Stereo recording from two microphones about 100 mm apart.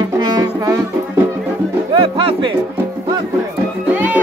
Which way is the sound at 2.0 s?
60° right (ahead or behind).